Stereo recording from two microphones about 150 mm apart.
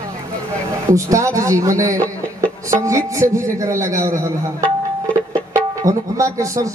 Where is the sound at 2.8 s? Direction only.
20° right (ahead or behind).